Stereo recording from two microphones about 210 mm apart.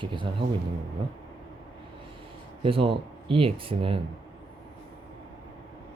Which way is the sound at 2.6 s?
25° right (ahead or behind).